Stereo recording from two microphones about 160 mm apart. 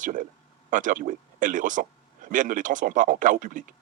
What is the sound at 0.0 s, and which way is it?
Speech, 55° right (ahead or behind).